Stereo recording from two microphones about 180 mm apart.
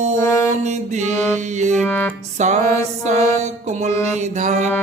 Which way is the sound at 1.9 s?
10° left (ahead or behind).